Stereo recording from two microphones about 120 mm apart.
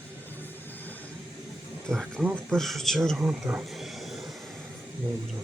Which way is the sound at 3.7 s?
Centre (ahead or behind).